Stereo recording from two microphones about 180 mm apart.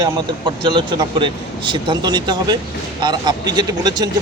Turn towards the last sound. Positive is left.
turn(degrees=-20)  # may be behind; listen again after turning